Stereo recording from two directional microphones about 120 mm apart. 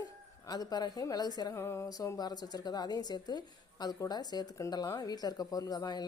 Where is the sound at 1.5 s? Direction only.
20° left (ahead or behind).